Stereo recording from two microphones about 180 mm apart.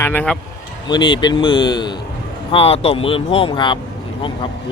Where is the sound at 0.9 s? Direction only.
25° left (ahead or behind).